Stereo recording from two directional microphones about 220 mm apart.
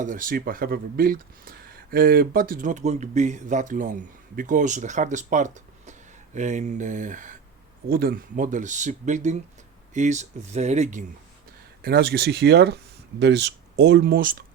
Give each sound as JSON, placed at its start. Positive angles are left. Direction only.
{"t": 0.0, "sound": "speech", "side_deg": -35}
{"t": 11.8, "sound": "speech", "side_deg": -45}